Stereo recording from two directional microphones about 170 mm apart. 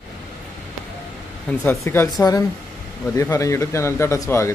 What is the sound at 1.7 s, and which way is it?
Speech, 15° left (ahead or behind).